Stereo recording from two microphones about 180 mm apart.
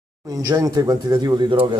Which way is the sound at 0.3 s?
20° right (ahead or behind).